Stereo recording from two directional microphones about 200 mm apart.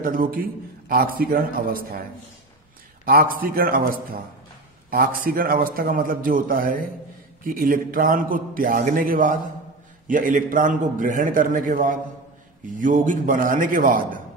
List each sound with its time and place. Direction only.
0.0 s a man's voice: 45° right (ahead or behind)
3.1 s a man's voice: 45° right (ahead or behind)